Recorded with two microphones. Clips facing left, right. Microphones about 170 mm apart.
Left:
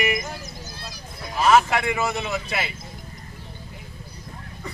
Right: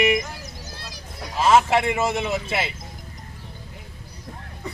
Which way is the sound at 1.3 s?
25° right (ahead or behind).